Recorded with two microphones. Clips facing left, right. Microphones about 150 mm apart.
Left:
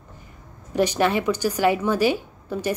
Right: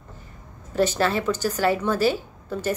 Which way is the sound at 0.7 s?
15° left (ahead or behind).